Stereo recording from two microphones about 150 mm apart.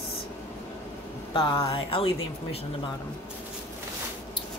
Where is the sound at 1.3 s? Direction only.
35° left (ahead or behind).